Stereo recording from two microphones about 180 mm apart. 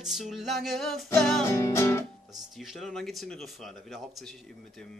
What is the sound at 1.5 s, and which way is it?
Music, 15° left (ahead or behind).